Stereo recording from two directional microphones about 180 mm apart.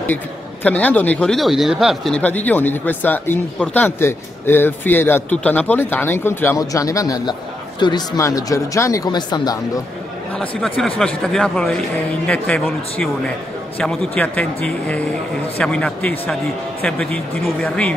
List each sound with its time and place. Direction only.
0.7 s speech: 10° left (ahead or behind)
11.0 s speech: 5° left (ahead or behind)